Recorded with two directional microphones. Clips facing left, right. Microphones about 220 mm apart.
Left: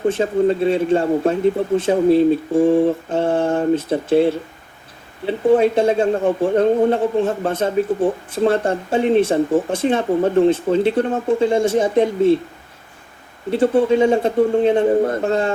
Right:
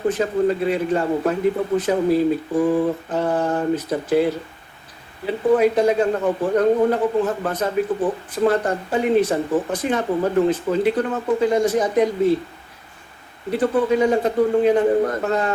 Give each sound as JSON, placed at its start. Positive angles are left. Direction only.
{"t": 0.1, "sound": "speech", "side_deg": 25}
{"t": 13.5, "sound": "speech", "side_deg": 25}